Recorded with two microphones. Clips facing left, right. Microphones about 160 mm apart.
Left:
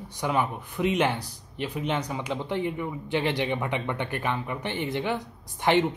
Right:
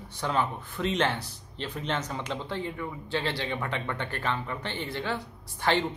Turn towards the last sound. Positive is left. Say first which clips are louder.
# left 4 dB
turn(degrees=20)  # may be behind; listen again after turning